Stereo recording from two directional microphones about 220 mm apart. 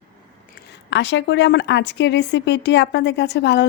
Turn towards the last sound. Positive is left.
turn(degrees=50)  # may be behind; listen again after turning